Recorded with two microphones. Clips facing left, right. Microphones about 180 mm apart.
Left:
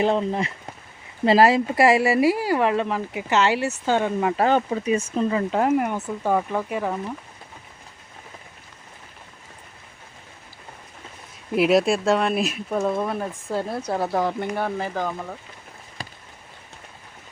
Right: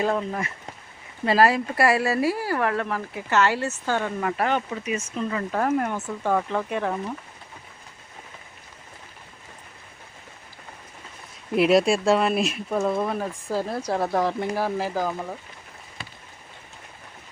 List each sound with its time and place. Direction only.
0.0 s speech: 25° left (ahead or behind)
4.4 s speech: 35° left (ahead or behind)
5.3 s speech: 20° left (ahead or behind)
11.5 s speech: centre (ahead or behind)